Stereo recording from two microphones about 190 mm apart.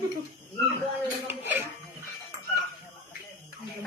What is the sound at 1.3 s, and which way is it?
Dishes, 10° right (ahead or behind).